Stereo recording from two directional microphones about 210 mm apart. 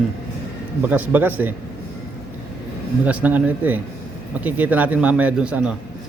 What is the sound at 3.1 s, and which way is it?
A man's voice, 5° right (ahead or behind).